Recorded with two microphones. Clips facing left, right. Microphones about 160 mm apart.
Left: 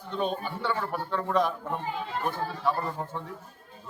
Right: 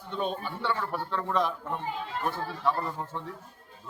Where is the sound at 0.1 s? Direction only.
Centre (ahead or behind).